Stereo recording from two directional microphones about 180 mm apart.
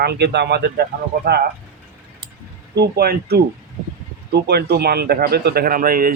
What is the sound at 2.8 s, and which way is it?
Speech, 60° right (ahead or behind).